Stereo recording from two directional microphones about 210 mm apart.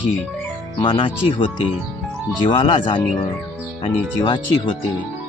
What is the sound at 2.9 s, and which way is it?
Speech, 25° left (ahead or behind).